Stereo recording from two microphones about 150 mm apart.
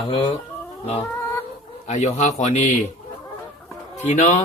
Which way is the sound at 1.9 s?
50° left (ahead or behind).